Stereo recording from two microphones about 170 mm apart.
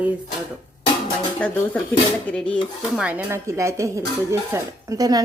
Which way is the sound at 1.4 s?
5° left (ahead or behind).